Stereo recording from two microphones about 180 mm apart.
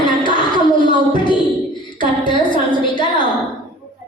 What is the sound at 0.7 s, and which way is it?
A woman's voice, 25° left (ahead or behind).